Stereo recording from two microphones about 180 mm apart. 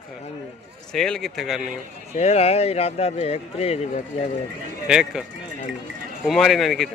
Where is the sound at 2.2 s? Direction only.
35° left (ahead or behind).